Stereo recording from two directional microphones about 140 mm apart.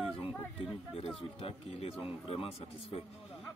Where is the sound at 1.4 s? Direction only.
45° left (ahead or behind).